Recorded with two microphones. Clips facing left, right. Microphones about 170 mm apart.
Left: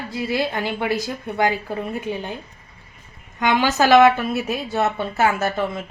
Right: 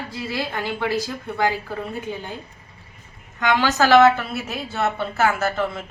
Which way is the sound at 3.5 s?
15° left (ahead or behind).